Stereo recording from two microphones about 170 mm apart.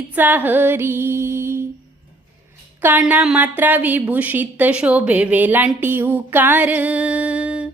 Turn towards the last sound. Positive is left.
turn(degrees=-5)  # may be behind; listen again after turning